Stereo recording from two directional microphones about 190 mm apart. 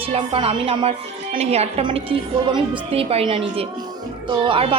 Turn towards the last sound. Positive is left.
turn(degrees=-30)  # may be behind; listen again after turning